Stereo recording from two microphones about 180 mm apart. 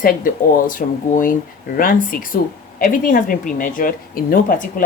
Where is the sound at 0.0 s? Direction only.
50° left (ahead or behind).